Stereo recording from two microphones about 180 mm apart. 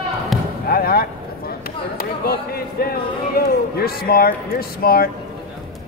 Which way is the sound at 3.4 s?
60° left (ahead or behind).